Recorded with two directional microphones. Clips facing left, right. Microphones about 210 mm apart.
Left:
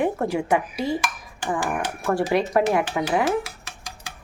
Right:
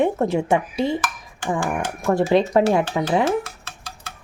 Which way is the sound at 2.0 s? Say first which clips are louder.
Right 4 dB; 25° right (ahead or behind).